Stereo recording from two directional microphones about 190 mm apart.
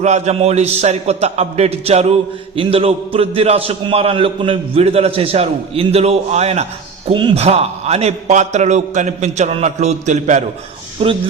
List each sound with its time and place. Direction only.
0.0 s a man's voice: 35° right (ahead or behind)